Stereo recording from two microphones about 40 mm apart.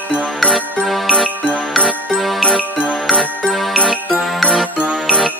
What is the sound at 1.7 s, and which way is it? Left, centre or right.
Jingle, left.